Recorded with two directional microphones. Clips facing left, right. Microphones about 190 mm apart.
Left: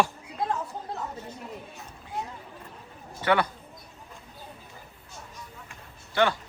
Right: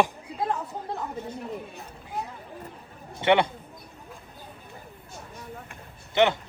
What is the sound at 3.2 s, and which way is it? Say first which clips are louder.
Speech: right 3 dB; 25° right (ahead or behind).